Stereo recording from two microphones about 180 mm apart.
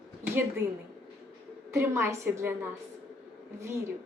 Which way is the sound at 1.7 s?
15° right (ahead or behind).